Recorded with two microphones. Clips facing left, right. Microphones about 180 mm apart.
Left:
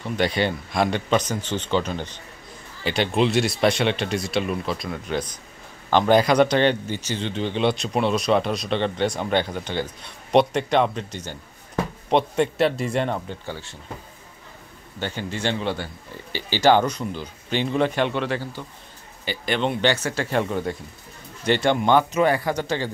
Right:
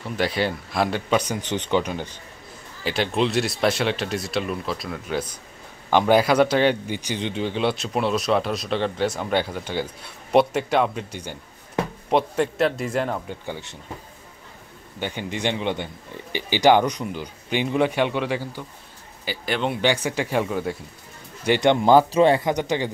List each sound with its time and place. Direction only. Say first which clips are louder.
0.0 s speech: left 1 dB; 5° right (ahead or behind)
2.8 s a man's voice: left 1 dB; centre (ahead or behind)
13.5 s speech: right 3 dB; 20° right (ahead or behind)
15.0 s speech: even; 15° right (ahead or behind)
21.5 s speech: right 2 dB; 15° right (ahead or behind)
21.8 s speech: right 4 dB; 30° right (ahead or behind); by 22.8 s 15° right (ahead or behind)